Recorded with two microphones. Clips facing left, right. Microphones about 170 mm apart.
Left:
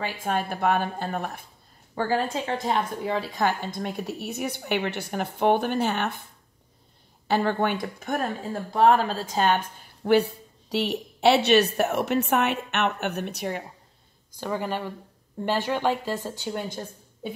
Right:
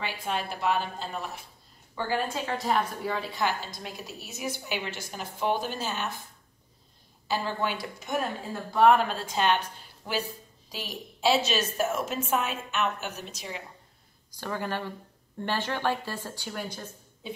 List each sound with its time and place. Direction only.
0.0 s speech: 50° left (ahead or behind)
2.0 s a woman's voice: 35° left (ahead or behind)
3.3 s a woman's voice: 50° left (ahead or behind)
7.2 s a woman's voice: 60° left (ahead or behind)
8.7 s a woman's voice: 35° left (ahead or behind); by 13.7 s 55° left (ahead or behind)
14.4 s speech: 15° left (ahead or behind)